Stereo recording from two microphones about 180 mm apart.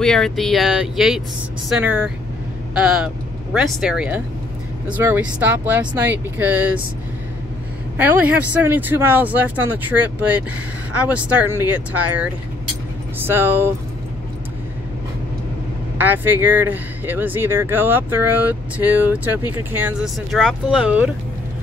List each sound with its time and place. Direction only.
0.0 s speech: 5° left (ahead or behind)
3.5 s speech: centre (ahead or behind)
8.0 s speech: 10° right (ahead or behind)
16.0 s speech: 10° right (ahead or behind)